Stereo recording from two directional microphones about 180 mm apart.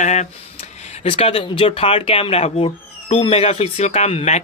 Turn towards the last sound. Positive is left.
turn(degrees=40)  # may be behind; listen again after turning